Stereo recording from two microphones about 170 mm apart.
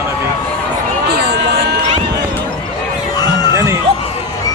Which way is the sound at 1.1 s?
65° right (ahead or behind).